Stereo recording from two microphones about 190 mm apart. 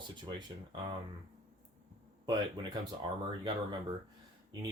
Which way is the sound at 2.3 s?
25° right (ahead or behind).